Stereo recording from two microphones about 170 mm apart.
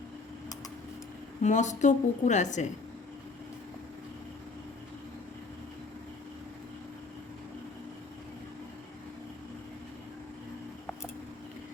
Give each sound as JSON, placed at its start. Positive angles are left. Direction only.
{"t": 1.4, "sound": "a woman's voice", "side_deg": 45}